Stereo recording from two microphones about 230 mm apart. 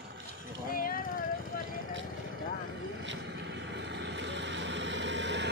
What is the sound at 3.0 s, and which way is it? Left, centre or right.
Vehicle, right.